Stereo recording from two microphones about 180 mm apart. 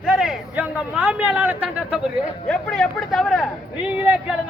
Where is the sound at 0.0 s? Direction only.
5° right (ahead or behind).